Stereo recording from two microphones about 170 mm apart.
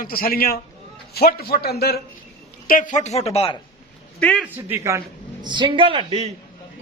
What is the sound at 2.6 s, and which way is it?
Speech, 50° left (ahead or behind).